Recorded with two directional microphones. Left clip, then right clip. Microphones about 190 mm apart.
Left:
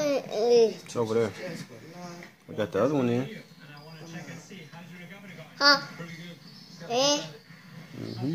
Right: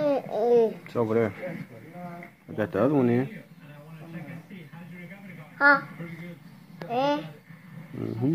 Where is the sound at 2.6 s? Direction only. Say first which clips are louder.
Right 2 dB; 5° left (ahead or behind).